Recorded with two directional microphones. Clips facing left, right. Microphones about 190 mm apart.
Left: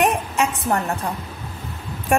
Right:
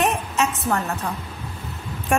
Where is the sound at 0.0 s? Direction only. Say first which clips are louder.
Left 2 dB; 15° left (ahead or behind).